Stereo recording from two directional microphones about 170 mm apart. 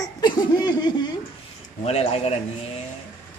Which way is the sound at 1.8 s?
35° left (ahead or behind).